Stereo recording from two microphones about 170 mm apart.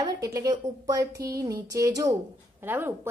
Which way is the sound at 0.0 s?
20° right (ahead or behind).